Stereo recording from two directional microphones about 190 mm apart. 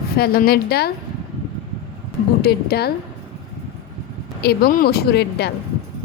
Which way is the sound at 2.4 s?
55° left (ahead or behind).